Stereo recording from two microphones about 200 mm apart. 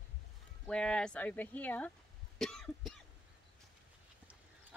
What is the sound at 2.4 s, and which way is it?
Cough, centre (ahead or behind).